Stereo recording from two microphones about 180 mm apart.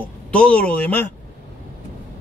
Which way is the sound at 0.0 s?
5° left (ahead or behind).